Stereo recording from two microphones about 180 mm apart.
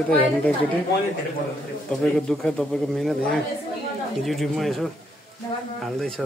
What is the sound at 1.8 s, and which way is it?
A man's voice, centre (ahead or behind).